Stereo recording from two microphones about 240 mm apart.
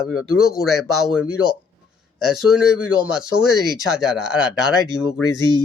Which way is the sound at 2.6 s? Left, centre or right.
Left.